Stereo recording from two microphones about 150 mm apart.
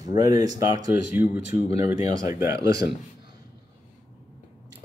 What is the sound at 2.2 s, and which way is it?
Speech, 20° right (ahead or behind).